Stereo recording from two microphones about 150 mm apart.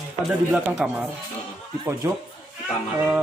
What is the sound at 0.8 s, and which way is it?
Music, 5° right (ahead or behind).